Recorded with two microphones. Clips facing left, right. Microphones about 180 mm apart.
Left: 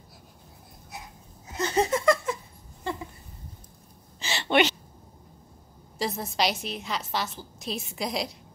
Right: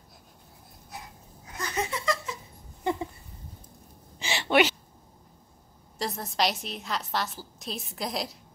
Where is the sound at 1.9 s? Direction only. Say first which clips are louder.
Left 8 dB; 50° left (ahead or behind).